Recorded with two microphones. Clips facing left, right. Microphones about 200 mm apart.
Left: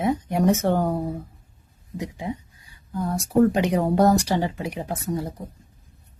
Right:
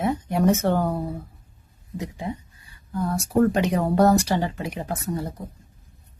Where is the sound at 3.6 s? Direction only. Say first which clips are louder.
Even; 15° left (ahead or behind).